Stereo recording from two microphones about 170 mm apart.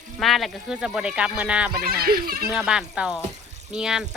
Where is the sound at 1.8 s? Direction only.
60° right (ahead or behind).